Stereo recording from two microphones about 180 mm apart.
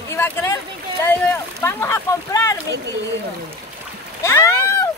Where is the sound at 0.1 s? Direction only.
15° left (ahead or behind).